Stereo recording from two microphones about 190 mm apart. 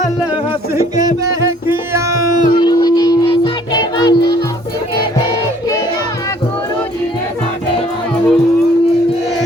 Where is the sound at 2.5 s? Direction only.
20° left (ahead or behind).